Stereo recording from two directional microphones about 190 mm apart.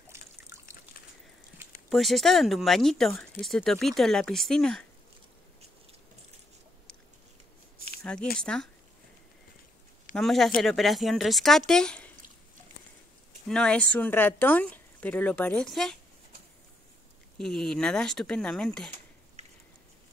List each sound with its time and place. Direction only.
0.1 s drip: 15° right (ahead or behind)
1.9 s speech: centre (ahead or behind)
8.0 s speech: 5° left (ahead or behind)
10.1 s speech: centre (ahead or behind)
13.5 s speech: 5° left (ahead or behind)
17.4 s speech: 5° left (ahead or behind)
19.4 s a sound: 35° right (ahead or behind)